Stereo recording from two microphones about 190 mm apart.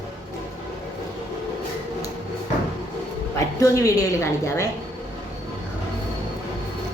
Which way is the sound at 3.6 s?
20° left (ahead or behind).